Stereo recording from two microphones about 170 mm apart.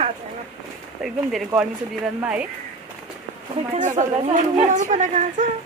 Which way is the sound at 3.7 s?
45° right (ahead or behind).